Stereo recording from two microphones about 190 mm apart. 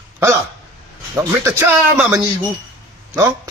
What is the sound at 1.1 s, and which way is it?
A man's voice, 15° right (ahead or behind).